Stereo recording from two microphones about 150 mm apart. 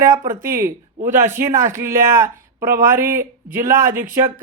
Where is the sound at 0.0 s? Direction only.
20° right (ahead or behind).